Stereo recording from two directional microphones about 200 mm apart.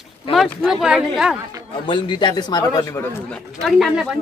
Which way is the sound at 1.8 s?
25° left (ahead or behind).